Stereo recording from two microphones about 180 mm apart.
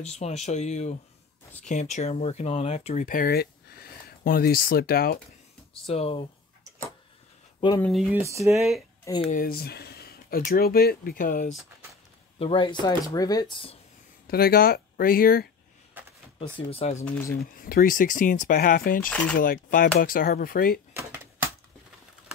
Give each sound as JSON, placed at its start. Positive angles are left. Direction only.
{"t": 0.1, "sound": "speech", "side_deg": 35}
{"t": 3.1, "sound": "speech", "side_deg": 55}
{"t": 5.9, "sound": "speech", "side_deg": 30}
{"t": 7.8, "sound": "speech", "side_deg": 0}
{"t": 8.1, "sound": "speech", "side_deg": -15}
{"t": 9.2, "sound": "speech", "side_deg": 50}
{"t": 12.4, "sound": "speech", "side_deg": 30}
{"t": 14.2, "sound": "speech", "side_deg": 55}
{"t": 16.0, "sound": "a sound", "side_deg": -10}
{"t": 16.3, "sound": "speech", "side_deg": 30}
{"t": 17.4, "sound": "speech", "side_deg": 55}
{"t": 19.0, "sound": "speech", "side_deg": 5}
{"t": 19.3, "sound": "speech", "side_deg": 50}